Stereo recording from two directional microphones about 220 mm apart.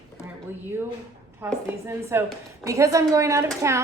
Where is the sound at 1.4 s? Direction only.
10° right (ahead or behind).